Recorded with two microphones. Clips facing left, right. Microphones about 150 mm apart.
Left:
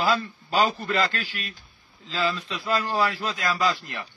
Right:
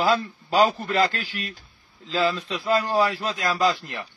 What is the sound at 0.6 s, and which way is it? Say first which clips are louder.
A man's voice: right 3 dB; 35° right (ahead or behind).